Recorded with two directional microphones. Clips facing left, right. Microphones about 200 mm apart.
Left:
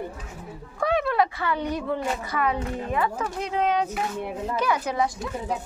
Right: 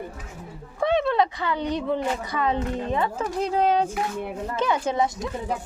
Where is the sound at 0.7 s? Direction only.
25° right (ahead or behind).